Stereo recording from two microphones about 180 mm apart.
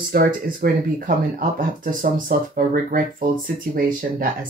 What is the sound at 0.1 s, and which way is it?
Speech, 50° right (ahead or behind).